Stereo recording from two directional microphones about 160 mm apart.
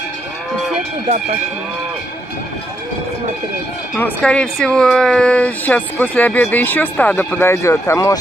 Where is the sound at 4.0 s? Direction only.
10° left (ahead or behind).